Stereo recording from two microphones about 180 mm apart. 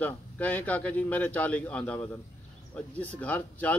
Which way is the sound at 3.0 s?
10° left (ahead or behind).